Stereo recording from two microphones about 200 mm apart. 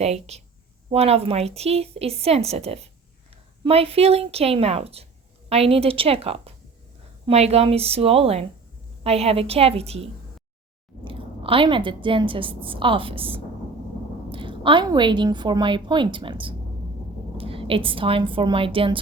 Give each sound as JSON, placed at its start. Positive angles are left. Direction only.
{"t": 0.0, "sound": "a woman's voice", "side_deg": -30}